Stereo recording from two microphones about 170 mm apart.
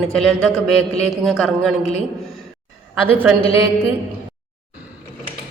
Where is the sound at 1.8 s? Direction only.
40° left (ahead or behind).